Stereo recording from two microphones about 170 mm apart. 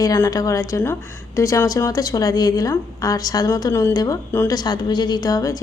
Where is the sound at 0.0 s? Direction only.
20° left (ahead or behind).